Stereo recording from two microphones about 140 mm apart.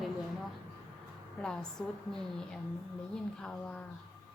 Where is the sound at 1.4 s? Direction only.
5° left (ahead or behind).